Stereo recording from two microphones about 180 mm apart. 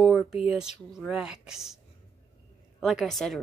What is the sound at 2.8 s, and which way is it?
Speech, centre (ahead or behind).